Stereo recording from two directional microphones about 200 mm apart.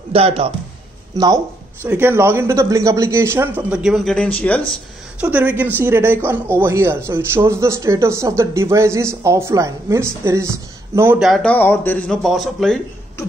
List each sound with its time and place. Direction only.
0.1 s speech: 30° right (ahead or behind); by 4.6 s 5° left (ahead or behind)
5.2 s a man's voice: 10° right (ahead or behind)